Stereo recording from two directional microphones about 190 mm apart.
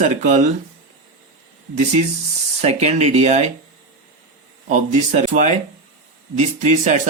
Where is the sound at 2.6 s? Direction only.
35° right (ahead or behind).